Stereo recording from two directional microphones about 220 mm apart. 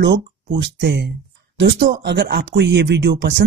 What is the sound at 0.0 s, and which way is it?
Speech, 55° right (ahead or behind).